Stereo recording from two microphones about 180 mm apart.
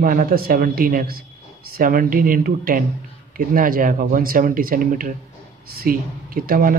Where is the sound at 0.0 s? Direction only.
50° right (ahead or behind).